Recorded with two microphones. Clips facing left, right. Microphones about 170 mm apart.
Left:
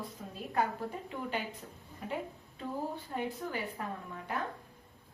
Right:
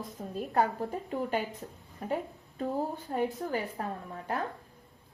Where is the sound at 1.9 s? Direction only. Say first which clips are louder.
Right 5 dB; 45° right (ahead or behind).